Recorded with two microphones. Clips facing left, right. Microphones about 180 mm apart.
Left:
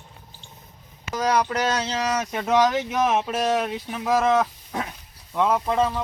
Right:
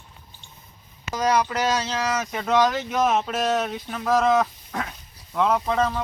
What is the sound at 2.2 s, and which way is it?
Speech, 15° left (ahead or behind).